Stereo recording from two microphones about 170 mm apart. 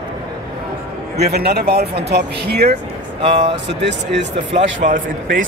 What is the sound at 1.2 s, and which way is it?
Speech, 70° right (ahead or behind).